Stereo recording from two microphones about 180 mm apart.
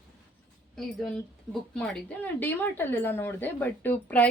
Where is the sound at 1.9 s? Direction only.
10° left (ahead or behind).